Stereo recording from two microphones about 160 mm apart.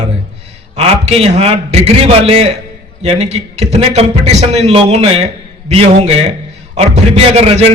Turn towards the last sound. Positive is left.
turn(degrees=-40)  # may be behind; listen again after turning